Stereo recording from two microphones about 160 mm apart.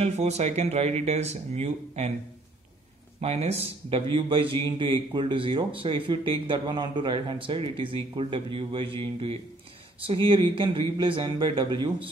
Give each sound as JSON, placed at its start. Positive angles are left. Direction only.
{"t": 0.0, "sound": "speech", "side_deg": -45}
{"t": 3.2, "sound": "speech", "side_deg": -40}